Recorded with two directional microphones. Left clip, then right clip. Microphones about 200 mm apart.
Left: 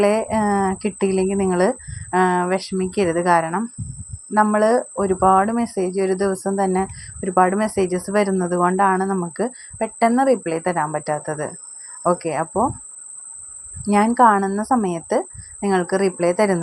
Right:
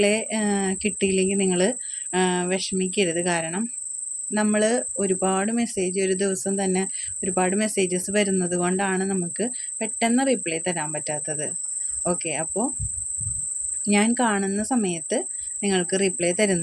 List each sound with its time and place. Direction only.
0.0 s speech: 5° left (ahead or behind)
13.8 s speech: 5° left (ahead or behind)